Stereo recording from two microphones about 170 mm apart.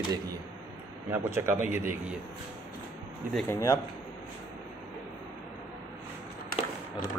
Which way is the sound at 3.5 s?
15° left (ahead or behind).